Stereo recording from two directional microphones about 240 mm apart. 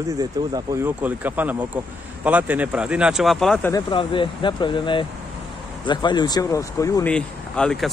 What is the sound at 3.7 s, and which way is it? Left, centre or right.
Speech, left.